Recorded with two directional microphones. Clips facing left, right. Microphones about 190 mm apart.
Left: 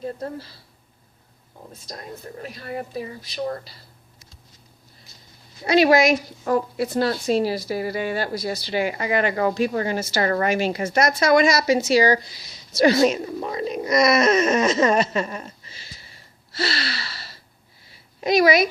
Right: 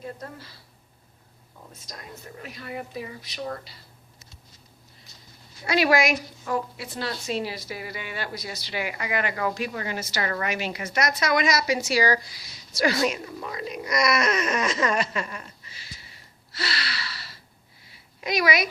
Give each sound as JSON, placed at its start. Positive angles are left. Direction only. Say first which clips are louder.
{"t": 0.0, "sound": "a woman's voice", "louder": "left 7 dB", "side_deg": 30}
{"t": 1.7, "sound": "a woman's voice", "louder": "left 6 dB", "side_deg": 35}
{"t": 5.6, "sound": "speech", "louder": "left 6 dB", "side_deg": 25}
{"t": 6.4, "sound": "a woman's voice", "louder": "left 7 dB", "side_deg": 40}
{"t": 15.3, "sound": "a woman's voice", "louder": "left 6 dB", "side_deg": 40}
{"t": 15.6, "sound": "gasp", "louder": "left 1 dB", "side_deg": 30}
{"t": 17.9, "sound": "a sound", "louder": "left 8 dB", "side_deg": 30}